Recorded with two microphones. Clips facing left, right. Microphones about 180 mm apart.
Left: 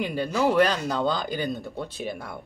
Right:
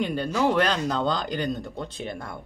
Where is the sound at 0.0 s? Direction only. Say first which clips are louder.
Even; 10° left (ahead or behind).